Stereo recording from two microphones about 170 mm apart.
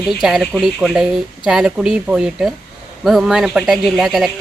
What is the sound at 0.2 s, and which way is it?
Speech, centre (ahead or behind).